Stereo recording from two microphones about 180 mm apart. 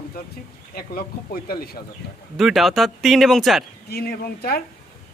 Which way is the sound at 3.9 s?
60° left (ahead or behind).